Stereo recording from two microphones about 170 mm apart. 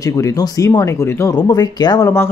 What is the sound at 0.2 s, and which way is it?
Speech, 20° left (ahead or behind).